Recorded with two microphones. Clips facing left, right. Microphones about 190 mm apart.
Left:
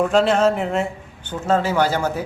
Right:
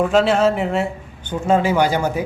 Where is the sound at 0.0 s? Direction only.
Centre (ahead or behind).